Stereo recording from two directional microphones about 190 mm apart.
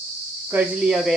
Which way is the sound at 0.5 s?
5° right (ahead or behind).